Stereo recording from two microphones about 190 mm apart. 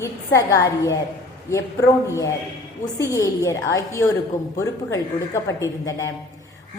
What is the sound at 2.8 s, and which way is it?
A woman's voice, 20° left (ahead or behind).